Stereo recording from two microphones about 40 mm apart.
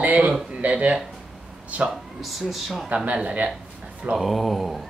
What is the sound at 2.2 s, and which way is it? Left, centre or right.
Speech, centre.